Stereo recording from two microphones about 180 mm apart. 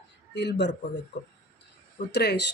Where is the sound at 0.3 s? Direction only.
75° left (ahead or behind).